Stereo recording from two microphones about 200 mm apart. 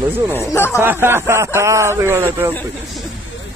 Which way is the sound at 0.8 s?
10° right (ahead or behind).